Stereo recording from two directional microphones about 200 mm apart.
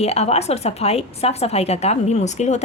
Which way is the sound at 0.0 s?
30° left (ahead or behind).